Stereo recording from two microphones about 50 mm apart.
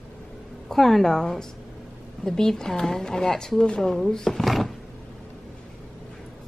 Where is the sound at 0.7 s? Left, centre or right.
Centre.